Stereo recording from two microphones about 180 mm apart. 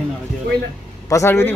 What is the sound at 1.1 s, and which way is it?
Speech, 15° left (ahead or behind).